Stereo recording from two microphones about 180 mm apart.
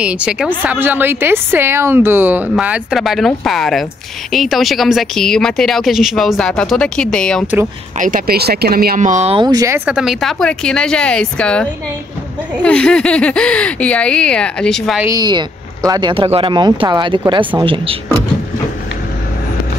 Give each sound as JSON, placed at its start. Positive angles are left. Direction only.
{"t": 0.0, "sound": "a woman's voice", "side_deg": -5}
{"t": 8.0, "sound": "speech", "side_deg": -55}
{"t": 9.8, "sound": "speech", "side_deg": 0}
{"t": 15.0, "sound": "speech", "side_deg": -20}